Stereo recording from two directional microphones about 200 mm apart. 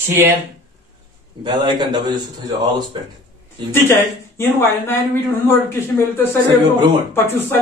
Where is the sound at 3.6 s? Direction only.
10° left (ahead or behind).